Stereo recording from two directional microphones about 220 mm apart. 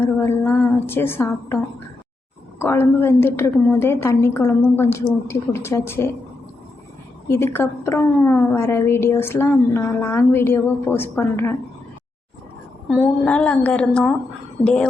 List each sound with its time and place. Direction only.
0.0 s a woman's voice: 10° left (ahead or behind)
2.6 s a woman's voice: 10° left (ahead or behind)
7.3 s a woman's voice: 10° left (ahead or behind)
12.9 s a woman's voice: 5° left (ahead or behind)